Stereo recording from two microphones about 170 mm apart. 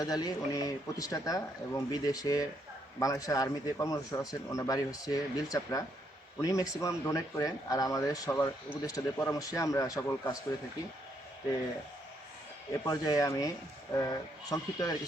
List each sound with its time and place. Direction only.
0.0 s a man's voice: 20° left (ahead or behind)
12.8 s a man's voice: 20° left (ahead or behind)